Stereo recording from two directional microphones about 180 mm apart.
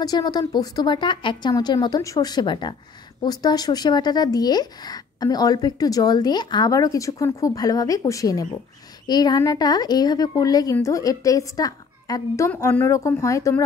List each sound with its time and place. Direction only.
0.0 s speech: 20° left (ahead or behind)